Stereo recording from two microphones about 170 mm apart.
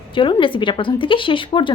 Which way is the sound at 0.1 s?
30° left (ahead or behind).